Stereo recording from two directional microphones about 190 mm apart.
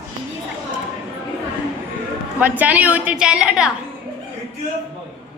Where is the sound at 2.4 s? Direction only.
10° right (ahead or behind).